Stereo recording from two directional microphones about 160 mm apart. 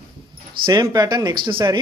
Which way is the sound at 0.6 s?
25° right (ahead or behind).